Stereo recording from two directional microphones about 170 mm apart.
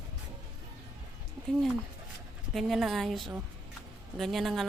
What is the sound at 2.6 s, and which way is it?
A woman's voice, centre (ahead or behind).